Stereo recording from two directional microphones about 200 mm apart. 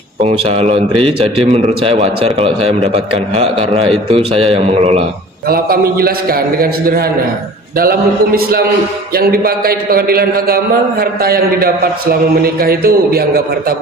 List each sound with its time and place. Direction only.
0.2 s a man's voice: 30° right (ahead or behind)
5.5 s a man's voice: 50° right (ahead or behind)